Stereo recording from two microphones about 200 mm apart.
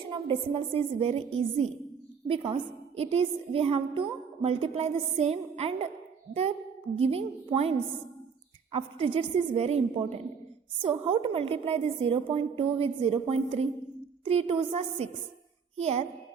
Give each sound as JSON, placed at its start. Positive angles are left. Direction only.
{"t": 0.1, "sound": "a woman's voice", "side_deg": -25}
{"t": 6.9, "sound": "a woman's voice", "side_deg": -30}